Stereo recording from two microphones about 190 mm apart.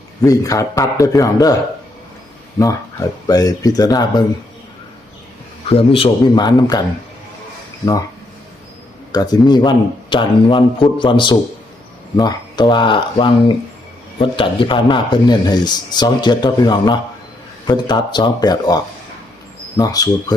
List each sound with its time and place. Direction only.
0.2 s a man's voice: 15° left (ahead or behind)
3.2 s a man's voice: 20° left (ahead or behind)
5.6 s a man's voice: 30° left (ahead or behind)
9.1 s a man's voice: 20° left (ahead or behind)